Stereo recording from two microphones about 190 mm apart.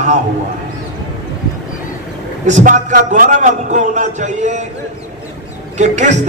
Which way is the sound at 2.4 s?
40° right (ahead or behind).